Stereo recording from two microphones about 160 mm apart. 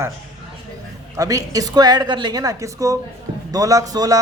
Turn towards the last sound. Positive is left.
turn(degrees=-20)  # may be behind; listen again after turning